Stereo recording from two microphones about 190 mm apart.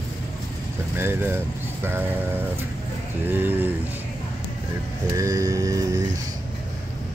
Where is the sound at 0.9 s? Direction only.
10° right (ahead or behind).